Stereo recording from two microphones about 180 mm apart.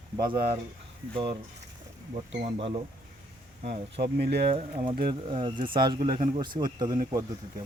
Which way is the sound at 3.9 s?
65° right (ahead or behind).